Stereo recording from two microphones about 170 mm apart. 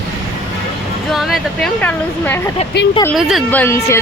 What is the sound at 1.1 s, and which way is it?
Speech, centre (ahead or behind).